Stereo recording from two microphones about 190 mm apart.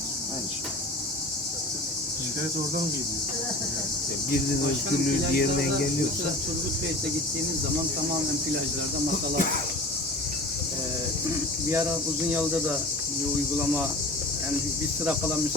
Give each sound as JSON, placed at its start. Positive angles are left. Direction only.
{"t": 5.0, "sound": "speech", "side_deg": 50}
{"t": 12.3, "sound": "speech", "side_deg": -5}